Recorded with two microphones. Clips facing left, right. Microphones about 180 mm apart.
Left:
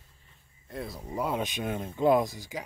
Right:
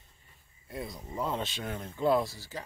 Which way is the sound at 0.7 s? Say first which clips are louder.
Left 1 dB; centre (ahead or behind).